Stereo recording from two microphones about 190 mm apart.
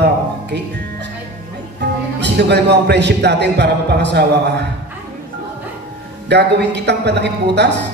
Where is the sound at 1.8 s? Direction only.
65° right (ahead or behind).